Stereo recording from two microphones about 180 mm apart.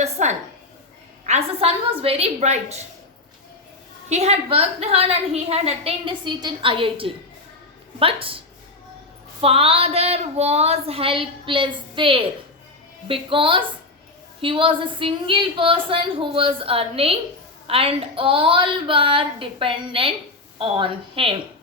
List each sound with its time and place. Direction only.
0.0 s a sound: 40° right (ahead or behind)
1.2 s a woman's voice: 35° right (ahead or behind)
4.1 s a woman's voice: 35° right (ahead or behind)
9.4 s a woman's voice: 30° right (ahead or behind)